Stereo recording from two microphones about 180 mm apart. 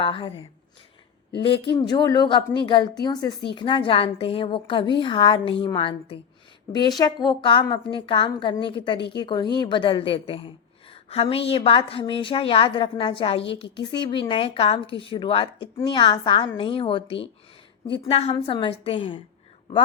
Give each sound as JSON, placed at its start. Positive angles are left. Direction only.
{"t": 0.0, "sound": "a woman's voice", "side_deg": 30}
{"t": 1.7, "sound": "a woman's voice", "side_deg": 25}
{"t": 13.4, "sound": "a woman's voice", "side_deg": 75}
{"t": 13.9, "sound": "a woman's voice", "side_deg": 25}